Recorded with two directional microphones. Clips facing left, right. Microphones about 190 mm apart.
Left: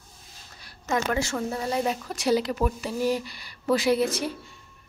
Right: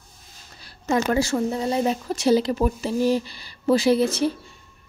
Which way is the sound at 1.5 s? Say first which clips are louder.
Right 4 dB; 25° right (ahead or behind).